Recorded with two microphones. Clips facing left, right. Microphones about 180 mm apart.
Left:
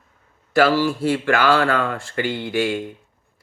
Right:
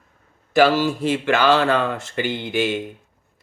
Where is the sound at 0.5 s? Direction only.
20° right (ahead or behind).